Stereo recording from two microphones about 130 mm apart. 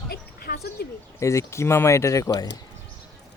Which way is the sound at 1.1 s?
20° left (ahead or behind).